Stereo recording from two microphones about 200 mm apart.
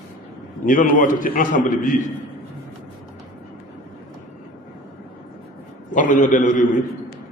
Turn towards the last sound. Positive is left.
turn(degrees=40)  # may be behind; listen again after turning